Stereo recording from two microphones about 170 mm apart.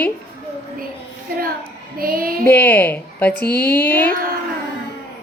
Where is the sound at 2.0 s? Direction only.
60° right (ahead or behind).